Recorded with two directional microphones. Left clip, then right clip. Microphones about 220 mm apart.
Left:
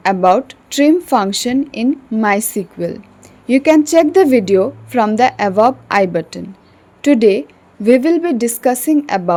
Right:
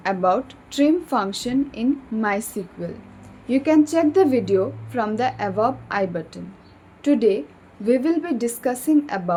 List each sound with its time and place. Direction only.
0.0 s speech: 40° left (ahead or behind)